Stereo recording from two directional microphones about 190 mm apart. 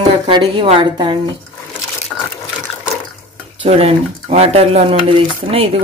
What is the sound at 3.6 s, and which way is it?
Speech, 30° right (ahead or behind).